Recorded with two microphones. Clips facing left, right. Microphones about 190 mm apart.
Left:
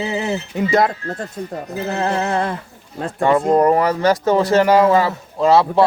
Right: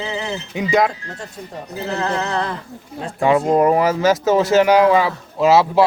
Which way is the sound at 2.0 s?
25° left (ahead or behind).